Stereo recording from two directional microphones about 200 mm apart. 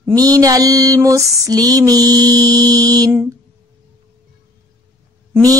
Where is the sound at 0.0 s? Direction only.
20° right (ahead or behind).